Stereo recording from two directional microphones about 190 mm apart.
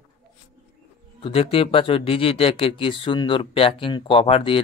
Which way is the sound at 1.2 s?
30° left (ahead or behind).